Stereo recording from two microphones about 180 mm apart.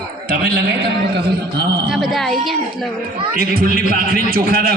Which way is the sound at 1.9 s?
Centre (ahead or behind).